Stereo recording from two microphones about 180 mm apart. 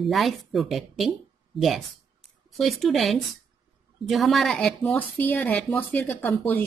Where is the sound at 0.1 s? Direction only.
Centre (ahead or behind).